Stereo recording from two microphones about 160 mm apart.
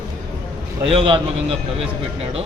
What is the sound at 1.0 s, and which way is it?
Speech, 35° right (ahead or behind).